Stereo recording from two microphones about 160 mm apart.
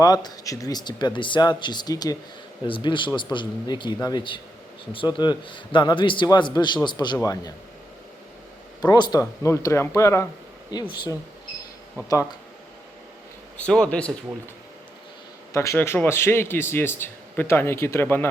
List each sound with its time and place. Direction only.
0.0 s a man's voice: 25° left (ahead or behind)
8.8 s a man's voice: 25° left (ahead or behind)
10.7 s a man's voice: 25° left (ahead or behind)
13.6 s speech: 5° left (ahead or behind)
15.5 s speech: 20° left (ahead or behind)